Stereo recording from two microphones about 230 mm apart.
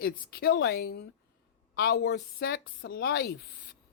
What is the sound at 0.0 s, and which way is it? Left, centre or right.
A woman's voice, left.